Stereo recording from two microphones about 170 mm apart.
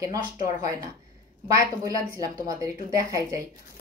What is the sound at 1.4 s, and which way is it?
A woman's voice, 20° right (ahead or behind).